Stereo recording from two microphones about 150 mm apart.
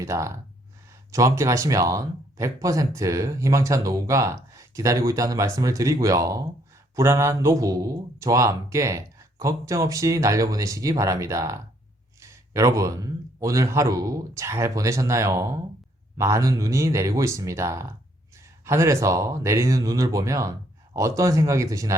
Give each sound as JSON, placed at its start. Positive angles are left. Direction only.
{"t": 0.0, "sound": "speech", "side_deg": -20}